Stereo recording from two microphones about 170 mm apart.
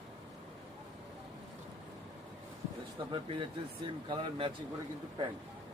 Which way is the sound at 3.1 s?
30° right (ahead or behind).